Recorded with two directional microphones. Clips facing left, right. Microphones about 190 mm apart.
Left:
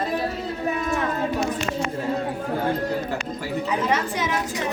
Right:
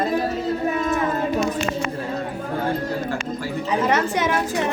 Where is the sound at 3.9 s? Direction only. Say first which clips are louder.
Right 4 dB; 60° right (ahead or behind).